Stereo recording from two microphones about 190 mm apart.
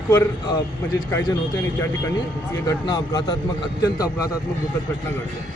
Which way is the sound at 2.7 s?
20° left (ahead or behind).